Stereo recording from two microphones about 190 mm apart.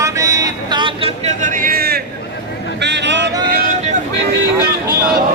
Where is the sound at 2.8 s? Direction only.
65° right (ahead or behind).